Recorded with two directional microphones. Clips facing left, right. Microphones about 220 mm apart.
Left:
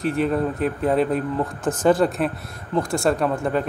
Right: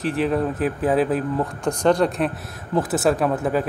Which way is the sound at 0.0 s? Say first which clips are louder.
Even; centre (ahead or behind).